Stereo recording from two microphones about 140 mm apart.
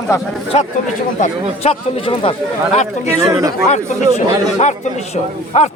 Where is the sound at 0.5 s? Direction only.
50° left (ahead or behind).